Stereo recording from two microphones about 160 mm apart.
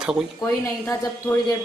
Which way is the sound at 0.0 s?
Centre (ahead or behind).